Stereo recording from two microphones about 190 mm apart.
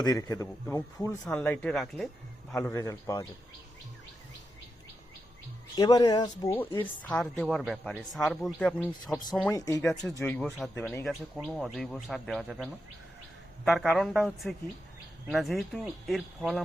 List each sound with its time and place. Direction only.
0.0 s a man's voice: 20° left (ahead or behind)
1.3 s a man's voice: 5° left (ahead or behind)
2.6 s a man's voice: 10° left (ahead or behind)
5.7 s speech: 20° left (ahead or behind)
6.8 s a man's voice: 5° left (ahead or behind)
9.5 s a man's voice: 15° left (ahead or behind); by 12.6 s centre (ahead or behind)
13.7 s a man's voice: centre (ahead or behind)